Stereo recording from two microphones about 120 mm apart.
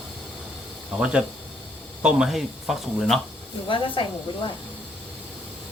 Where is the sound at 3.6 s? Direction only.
45° left (ahead or behind).